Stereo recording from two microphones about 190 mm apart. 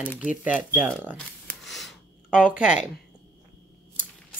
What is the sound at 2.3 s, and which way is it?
Speech, 45° left (ahead or behind).